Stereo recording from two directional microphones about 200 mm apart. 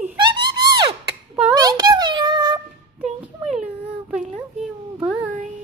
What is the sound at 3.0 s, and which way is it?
Music, 5° right (ahead or behind).